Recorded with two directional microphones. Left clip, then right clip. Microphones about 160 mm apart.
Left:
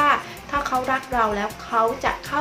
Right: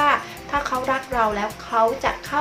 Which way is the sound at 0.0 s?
10° right (ahead or behind).